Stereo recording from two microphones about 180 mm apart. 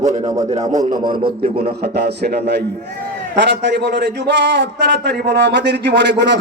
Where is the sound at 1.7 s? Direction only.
65° right (ahead or behind).